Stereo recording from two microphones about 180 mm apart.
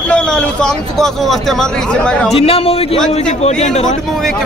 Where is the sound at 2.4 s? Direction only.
30° left (ahead or behind).